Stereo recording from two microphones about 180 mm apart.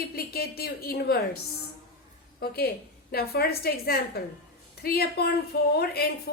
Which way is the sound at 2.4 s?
60° left (ahead or behind).